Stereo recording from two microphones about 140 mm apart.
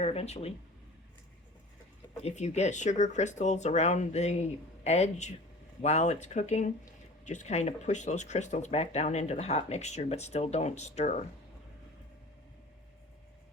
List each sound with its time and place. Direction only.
0.0 s speech: 45° left (ahead or behind)
2.2 s speech: 50° left (ahead or behind)